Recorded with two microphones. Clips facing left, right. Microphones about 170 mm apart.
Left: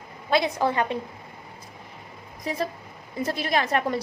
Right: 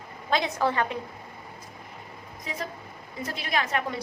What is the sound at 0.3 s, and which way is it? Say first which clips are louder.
Speech: left 3 dB; 15° left (ahead or behind).